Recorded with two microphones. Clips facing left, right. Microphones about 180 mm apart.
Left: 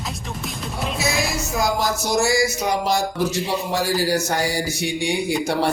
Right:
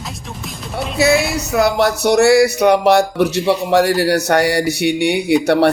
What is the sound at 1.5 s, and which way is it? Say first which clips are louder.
Speech: right 9 dB; 65° right (ahead or behind).